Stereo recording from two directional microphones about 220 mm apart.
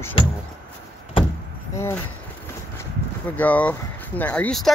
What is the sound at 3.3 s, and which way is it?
Speech, 5° left (ahead or behind).